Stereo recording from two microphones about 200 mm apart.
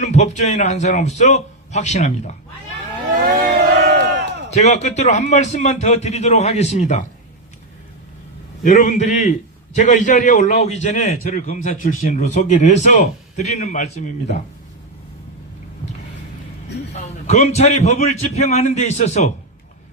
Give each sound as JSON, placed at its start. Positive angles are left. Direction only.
{"t": 0.0, "sound": "a man's voice", "side_deg": 35}
{"t": 3.2, "sound": "crowd", "side_deg": -50}
{"t": 4.5, "sound": "a man's voice", "side_deg": 35}
{"t": 8.6, "sound": "a man's voice", "side_deg": 40}
{"t": 16.9, "sound": "a man's voice", "side_deg": 35}